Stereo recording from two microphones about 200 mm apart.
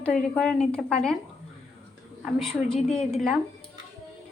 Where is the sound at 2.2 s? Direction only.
Centre (ahead or behind).